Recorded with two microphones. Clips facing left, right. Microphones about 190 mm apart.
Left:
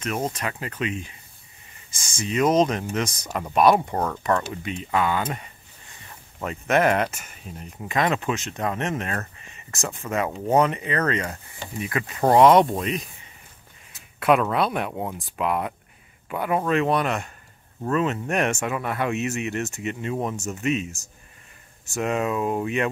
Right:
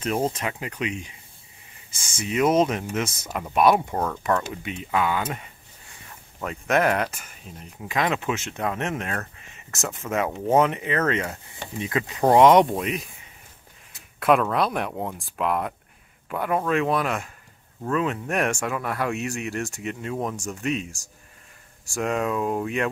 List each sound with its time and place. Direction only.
0.0 s speech: 30° right (ahead or behind)
0.4 s speech: 15° right (ahead or behind)
11.8 s speech: 20° right (ahead or behind)
14.2 s speech: centre (ahead or behind)